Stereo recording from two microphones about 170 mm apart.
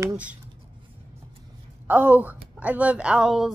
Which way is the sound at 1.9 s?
10° right (ahead or behind).